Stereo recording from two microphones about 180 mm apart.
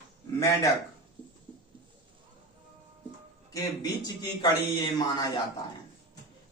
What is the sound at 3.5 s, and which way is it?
A man's voice, 20° left (ahead or behind).